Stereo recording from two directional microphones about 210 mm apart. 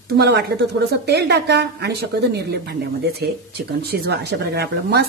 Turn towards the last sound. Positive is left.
turn(degrees=-50)  # may be behind; listen again after turning